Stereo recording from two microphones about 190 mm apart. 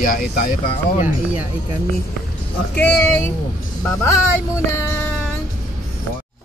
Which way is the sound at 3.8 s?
15° left (ahead or behind).